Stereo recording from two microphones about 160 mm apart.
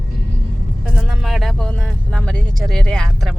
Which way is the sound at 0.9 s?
Centre (ahead or behind).